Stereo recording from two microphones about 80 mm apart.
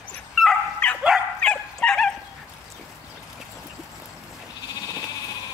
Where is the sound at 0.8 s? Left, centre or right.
Centre.